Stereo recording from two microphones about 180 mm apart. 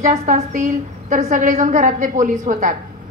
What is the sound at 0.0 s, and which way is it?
A woman's voice, 40° right (ahead or behind).